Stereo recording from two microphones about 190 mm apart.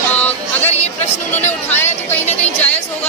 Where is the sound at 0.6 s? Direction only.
35° left (ahead or behind).